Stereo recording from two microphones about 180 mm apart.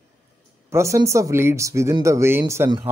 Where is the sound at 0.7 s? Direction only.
15° right (ahead or behind).